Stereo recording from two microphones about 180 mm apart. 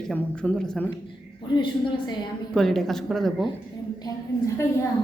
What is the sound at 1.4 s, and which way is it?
Speech, 25° left (ahead or behind).